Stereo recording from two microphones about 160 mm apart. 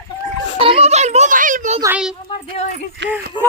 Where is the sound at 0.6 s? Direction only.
35° right (ahead or behind); by 1.8 s 55° right (ahead or behind).